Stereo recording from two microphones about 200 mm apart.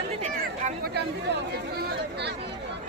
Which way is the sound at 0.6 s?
50° right (ahead or behind).